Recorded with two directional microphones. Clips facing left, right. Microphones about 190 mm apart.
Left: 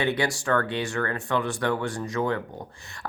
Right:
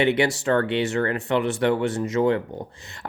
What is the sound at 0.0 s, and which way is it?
Speech, 25° right (ahead or behind).